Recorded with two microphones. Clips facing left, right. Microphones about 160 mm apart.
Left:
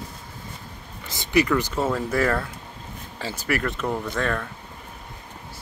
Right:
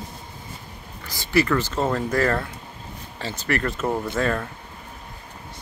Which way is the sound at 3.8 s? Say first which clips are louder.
Right 2 dB; 20° right (ahead or behind).